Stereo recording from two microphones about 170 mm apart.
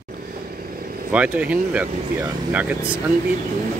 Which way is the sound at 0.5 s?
60° right (ahead or behind).